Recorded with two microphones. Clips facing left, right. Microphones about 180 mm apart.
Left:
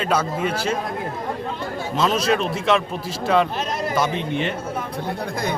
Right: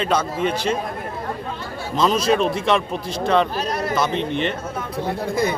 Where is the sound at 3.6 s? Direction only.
20° left (ahead or behind).